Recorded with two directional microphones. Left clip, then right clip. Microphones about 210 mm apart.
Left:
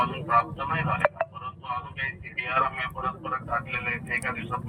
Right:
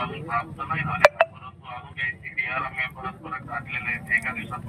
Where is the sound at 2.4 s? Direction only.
25° left (ahead or behind).